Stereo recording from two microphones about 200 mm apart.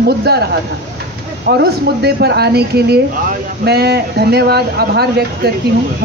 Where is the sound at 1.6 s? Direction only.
55° right (ahead or behind).